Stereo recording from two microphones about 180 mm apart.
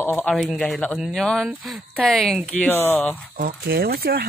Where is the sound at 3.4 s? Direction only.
60° right (ahead or behind).